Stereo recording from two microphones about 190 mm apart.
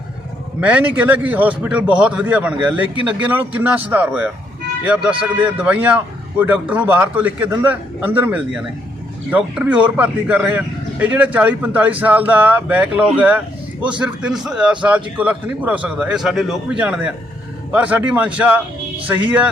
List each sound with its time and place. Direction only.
0.6 s a man's voice: 5° right (ahead or behind)